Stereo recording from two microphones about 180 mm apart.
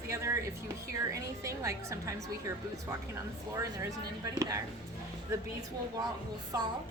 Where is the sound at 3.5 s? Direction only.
15° right (ahead or behind).